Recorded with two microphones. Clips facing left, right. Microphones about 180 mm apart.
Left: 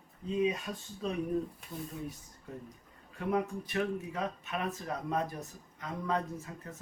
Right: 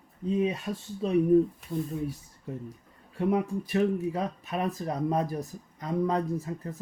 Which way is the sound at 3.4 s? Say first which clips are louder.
Right 7 dB; 35° right (ahead or behind).